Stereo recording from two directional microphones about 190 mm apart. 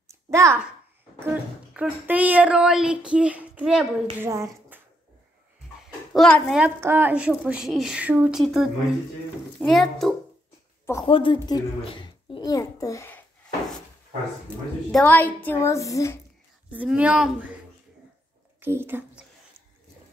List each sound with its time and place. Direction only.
0.1 s a sound: 15° right (ahead or behind)
1.2 s speech: 5° right (ahead or behind)
6.1 s speech: centre (ahead or behind)
6.6 s speech: 10° right (ahead or behind)
11.1 s a child's voice: 25° left (ahead or behind)
14.9 s a woman's voice: 5° left (ahead or behind)
16.7 s speech: 5° right (ahead or behind)
18.6 s a woman's voice: 10° right (ahead or behind)